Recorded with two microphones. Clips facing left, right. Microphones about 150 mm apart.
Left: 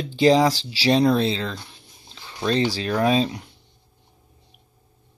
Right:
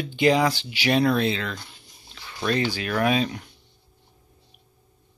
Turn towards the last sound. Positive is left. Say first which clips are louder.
# left 3 dB
turn(degrees=30)  # may be behind; listen again after turning